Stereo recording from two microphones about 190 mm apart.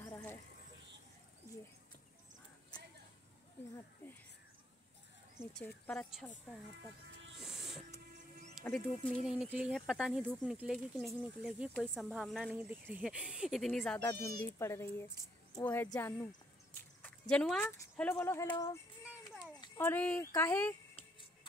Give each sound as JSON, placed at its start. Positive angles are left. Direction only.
{"t": 0.0, "sound": "a sound", "side_deg": 10}
{"t": 3.7, "sound": "a sound", "side_deg": 10}
{"t": 5.4, "sound": "speech", "side_deg": 5}
{"t": 7.3, "sound": "music", "side_deg": 0}
{"t": 8.2, "sound": "music", "side_deg": -40}
{"t": 8.6, "sound": "speech", "side_deg": 5}
{"t": 14.4, "sound": "speech", "side_deg": 15}
{"t": 19.0, "sound": "a sound", "side_deg": -5}
{"t": 19.6, "sound": "speech", "side_deg": 10}